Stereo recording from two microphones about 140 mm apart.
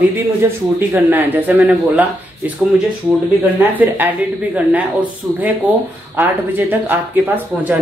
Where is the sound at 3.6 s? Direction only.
15° right (ahead or behind).